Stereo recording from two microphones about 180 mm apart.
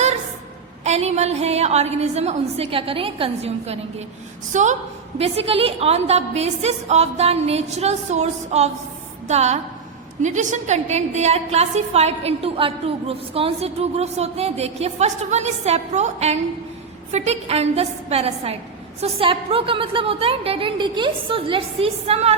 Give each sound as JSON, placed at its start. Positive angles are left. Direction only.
{"t": 0.9, "sound": "a woman's voice", "side_deg": -35}